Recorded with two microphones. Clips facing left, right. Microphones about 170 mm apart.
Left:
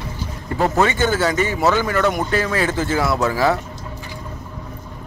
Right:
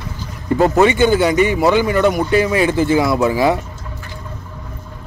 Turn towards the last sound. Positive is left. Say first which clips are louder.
# right 3 dB
turn(degrees=-15)  # may be behind; listen again after turning